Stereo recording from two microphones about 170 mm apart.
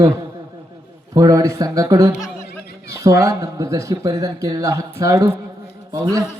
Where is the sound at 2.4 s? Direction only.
70° left (ahead or behind).